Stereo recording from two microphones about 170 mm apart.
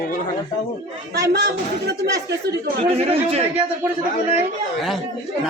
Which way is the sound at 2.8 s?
35° right (ahead or behind).